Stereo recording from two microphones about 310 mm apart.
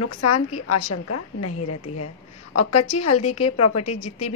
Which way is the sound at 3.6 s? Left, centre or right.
Left.